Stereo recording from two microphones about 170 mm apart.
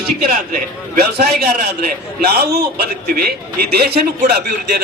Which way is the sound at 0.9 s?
65° right (ahead or behind).